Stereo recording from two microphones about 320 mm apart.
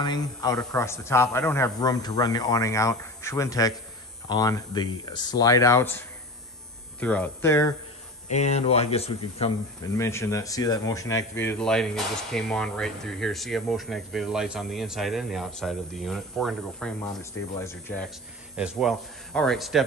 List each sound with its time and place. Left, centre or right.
0.0 s a man's voice: centre
8.3 s speech: left; by 19.8 s centre